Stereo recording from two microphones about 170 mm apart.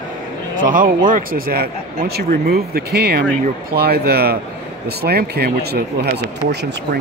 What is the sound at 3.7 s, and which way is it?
Speech, 65° right (ahead or behind).